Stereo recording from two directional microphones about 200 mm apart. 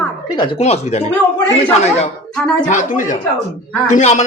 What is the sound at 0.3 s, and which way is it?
Speech, 25° left (ahead or behind).